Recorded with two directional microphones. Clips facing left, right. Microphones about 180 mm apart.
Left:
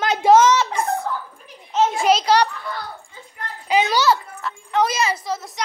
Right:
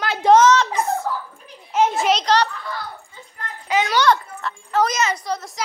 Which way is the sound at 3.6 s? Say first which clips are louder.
Even; 15° left (ahead or behind).